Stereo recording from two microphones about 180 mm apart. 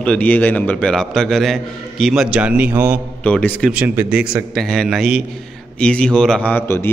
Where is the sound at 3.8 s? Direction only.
10° right (ahead or behind).